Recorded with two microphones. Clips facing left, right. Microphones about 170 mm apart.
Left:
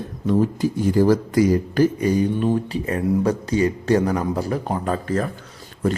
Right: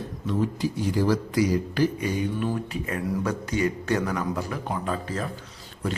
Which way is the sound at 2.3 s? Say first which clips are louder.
Left 7 dB; 30° left (ahead or behind).